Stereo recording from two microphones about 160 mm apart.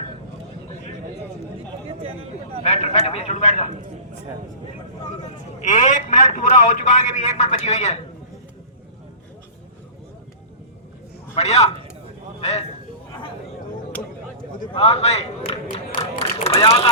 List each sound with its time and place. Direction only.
2.6 s a man's voice: 45° left (ahead or behind)
5.6 s a man's voice: 50° left (ahead or behind)
11.3 s a man's voice: 45° left (ahead or behind)
14.7 s a man's voice: 40° left (ahead or behind)